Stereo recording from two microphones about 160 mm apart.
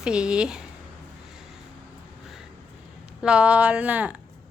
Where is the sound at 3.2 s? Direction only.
5° right (ahead or behind).